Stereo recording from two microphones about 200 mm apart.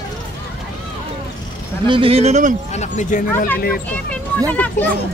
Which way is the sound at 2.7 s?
35° left (ahead or behind).